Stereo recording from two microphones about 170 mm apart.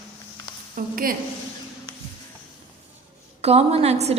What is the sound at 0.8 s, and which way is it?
Speech, 55° right (ahead or behind).